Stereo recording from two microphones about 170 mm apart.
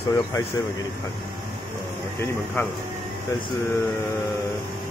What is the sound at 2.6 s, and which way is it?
Speech, 10° left (ahead or behind).